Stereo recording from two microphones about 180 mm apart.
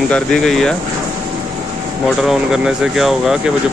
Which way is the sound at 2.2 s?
5° right (ahead or behind).